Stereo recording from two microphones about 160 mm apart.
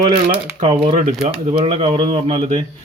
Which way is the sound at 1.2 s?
35° right (ahead or behind).